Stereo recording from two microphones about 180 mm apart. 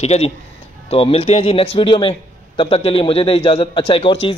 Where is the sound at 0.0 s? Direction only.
35° left (ahead or behind).